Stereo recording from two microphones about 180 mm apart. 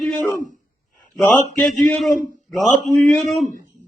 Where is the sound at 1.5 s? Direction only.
Centre (ahead or behind).